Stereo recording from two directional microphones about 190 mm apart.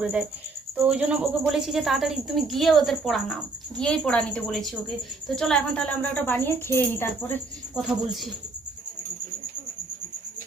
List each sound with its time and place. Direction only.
0.8 s a woman's voice: 5° right (ahead or behind); by 7.3 s 10° left (ahead or behind)
7.8 s speech: centre (ahead or behind)